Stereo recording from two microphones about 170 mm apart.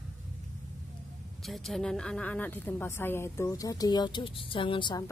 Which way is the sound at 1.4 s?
Centre (ahead or behind).